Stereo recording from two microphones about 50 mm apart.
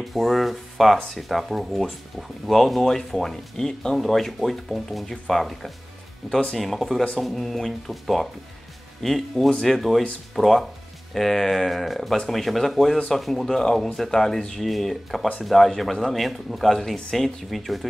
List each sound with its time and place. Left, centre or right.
0.1 s speech: centre